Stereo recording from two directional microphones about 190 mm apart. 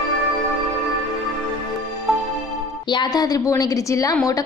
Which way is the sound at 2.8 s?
20° left (ahead or behind).